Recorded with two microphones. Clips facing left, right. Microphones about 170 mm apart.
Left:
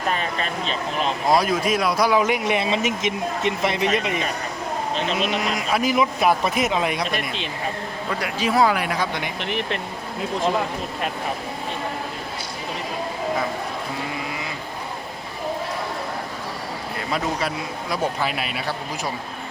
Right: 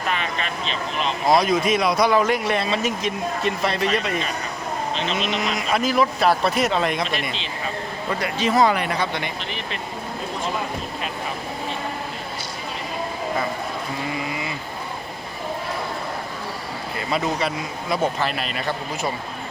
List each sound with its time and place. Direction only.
0.1 s vehicle: 40° left (ahead or behind)
1.3 s speech: 5° left (ahead or behind)
7.2 s speech: 55° left (ahead or behind)
8.2 s speech: 10° left (ahead or behind)
9.4 s speech: 65° left (ahead or behind)
17.1 s speech: centre (ahead or behind)